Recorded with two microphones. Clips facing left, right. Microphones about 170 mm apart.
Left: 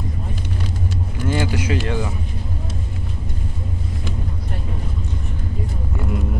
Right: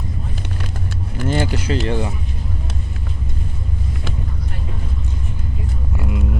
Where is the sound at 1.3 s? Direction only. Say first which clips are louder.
Right 1 dB; 30° right (ahead or behind).